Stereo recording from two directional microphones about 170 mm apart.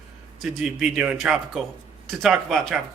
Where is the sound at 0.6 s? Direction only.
5° right (ahead or behind).